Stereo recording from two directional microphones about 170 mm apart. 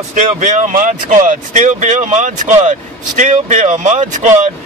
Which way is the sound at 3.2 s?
50° right (ahead or behind).